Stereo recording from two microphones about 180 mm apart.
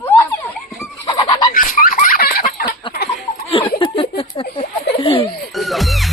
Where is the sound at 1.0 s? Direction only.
20° left (ahead or behind).